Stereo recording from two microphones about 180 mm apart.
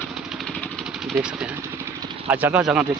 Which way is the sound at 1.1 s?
5° right (ahead or behind).